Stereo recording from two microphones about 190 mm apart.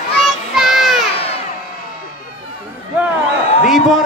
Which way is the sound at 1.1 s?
30° left (ahead or behind).